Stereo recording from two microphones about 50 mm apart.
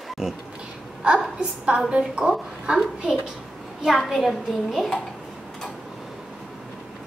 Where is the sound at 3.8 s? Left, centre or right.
Centre.